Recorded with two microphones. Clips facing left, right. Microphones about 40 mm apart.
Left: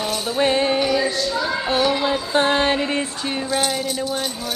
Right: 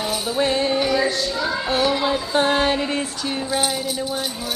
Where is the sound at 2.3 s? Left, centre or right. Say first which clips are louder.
Left 1 dB; centre.